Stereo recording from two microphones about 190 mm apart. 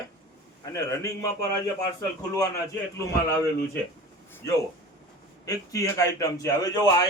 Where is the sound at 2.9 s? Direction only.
15° left (ahead or behind).